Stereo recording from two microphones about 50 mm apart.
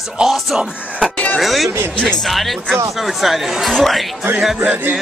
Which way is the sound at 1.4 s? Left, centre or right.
Centre.